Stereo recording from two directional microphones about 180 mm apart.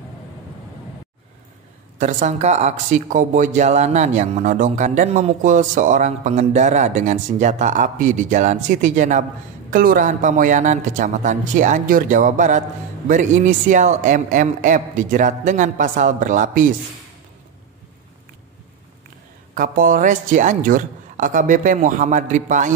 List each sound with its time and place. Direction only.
2.0 s speech: 45° right (ahead or behind)
19.5 s speech: 50° right (ahead or behind)